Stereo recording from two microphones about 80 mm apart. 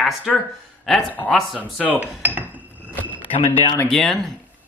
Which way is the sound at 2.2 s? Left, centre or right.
Right.